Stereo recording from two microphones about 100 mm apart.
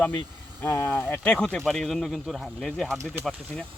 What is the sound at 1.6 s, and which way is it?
Speech, centre (ahead or behind).